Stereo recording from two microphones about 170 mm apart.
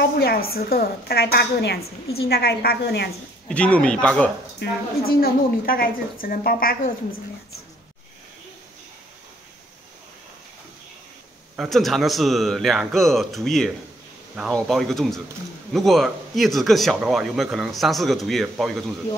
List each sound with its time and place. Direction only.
0.0 s a woman's voice: 65° left (ahead or behind)
3.4 s speech: 5° left (ahead or behind)
4.6 s a woman's voice: 60° left (ahead or behind)
11.5 s speech: centre (ahead or behind)